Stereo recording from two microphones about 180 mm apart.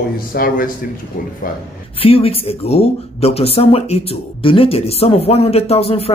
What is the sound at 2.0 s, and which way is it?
Speech, 30° left (ahead or behind).